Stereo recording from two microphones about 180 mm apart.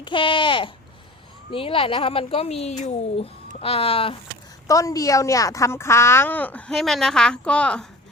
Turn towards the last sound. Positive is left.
turn(degrees=5)  # may be behind; listen again after turning